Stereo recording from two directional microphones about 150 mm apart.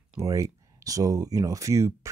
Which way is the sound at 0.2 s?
20° right (ahead or behind).